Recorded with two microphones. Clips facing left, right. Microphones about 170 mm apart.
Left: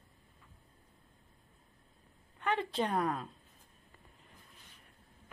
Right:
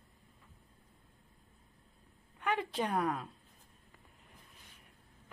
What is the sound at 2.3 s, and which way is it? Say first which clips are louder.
Speech: left 1 dB; 10° right (ahead or behind).